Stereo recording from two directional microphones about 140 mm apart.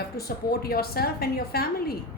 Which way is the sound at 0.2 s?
90° left.